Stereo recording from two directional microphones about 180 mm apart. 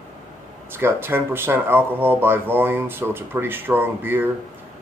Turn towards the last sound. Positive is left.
turn(degrees=-10)  # may be behind; listen again after turning